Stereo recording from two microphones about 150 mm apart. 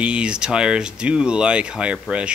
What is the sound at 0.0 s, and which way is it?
Speech, 5° right (ahead or behind).